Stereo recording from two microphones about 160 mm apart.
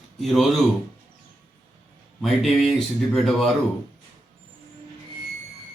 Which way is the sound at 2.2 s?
Centre (ahead or behind).